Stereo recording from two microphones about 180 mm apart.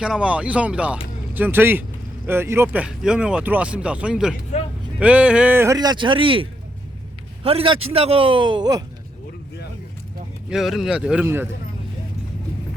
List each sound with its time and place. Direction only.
0.0 s a man's voice: 5° right (ahead or behind); by 8.8 s 25° right (ahead or behind)
10.5 s speech: centre (ahead or behind)